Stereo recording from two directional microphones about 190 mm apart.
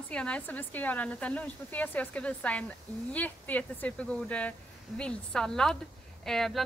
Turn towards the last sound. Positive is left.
turn(degrees=0)  # may be behind; listen again after turning